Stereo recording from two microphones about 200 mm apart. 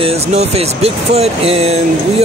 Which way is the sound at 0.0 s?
30° right (ahead or behind).